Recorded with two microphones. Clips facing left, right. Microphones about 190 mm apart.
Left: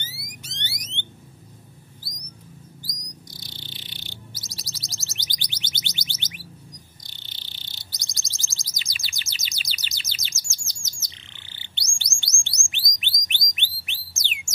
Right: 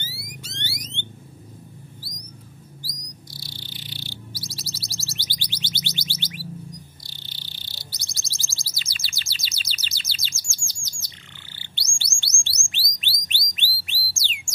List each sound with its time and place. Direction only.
0.2 s alarm: 20° left (ahead or behind)
3.3 s music: 20° left (ahead or behind)
7.0 s bird: 20° left (ahead or behind)
12.2 s chirp: 15° left (ahead or behind)
13.0 s bird: 20° left (ahead or behind)